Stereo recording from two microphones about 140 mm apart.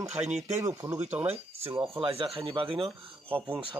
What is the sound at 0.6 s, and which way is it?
Speech, 20° right (ahead or behind).